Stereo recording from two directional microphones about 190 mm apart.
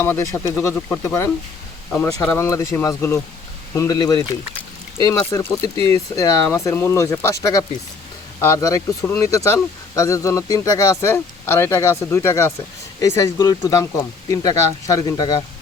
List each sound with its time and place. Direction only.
0.0 s a man's voice: 15° left (ahead or behind)